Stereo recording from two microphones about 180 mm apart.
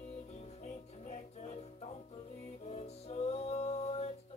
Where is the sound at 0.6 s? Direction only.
40° left (ahead or behind).